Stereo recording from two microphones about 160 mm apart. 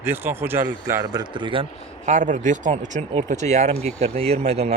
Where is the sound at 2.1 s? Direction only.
50° right (ahead or behind).